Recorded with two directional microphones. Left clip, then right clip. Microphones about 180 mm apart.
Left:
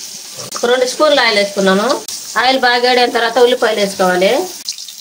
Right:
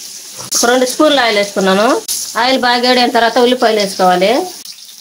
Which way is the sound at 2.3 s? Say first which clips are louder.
Even; 50° right (ahead or behind).